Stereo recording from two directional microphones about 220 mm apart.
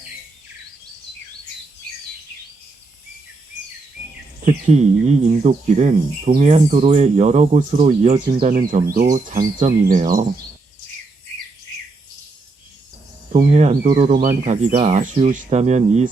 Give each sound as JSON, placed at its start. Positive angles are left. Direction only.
{"t": 4.4, "sound": "speech", "side_deg": -30}
{"t": 13.3, "sound": "speech", "side_deg": -30}